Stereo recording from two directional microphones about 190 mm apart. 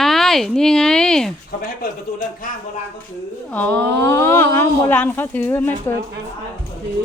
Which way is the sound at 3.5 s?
10° left (ahead or behind).